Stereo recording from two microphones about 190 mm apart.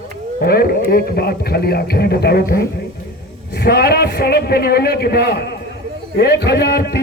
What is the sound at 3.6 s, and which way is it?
A man's voice, 55° left (ahead or behind).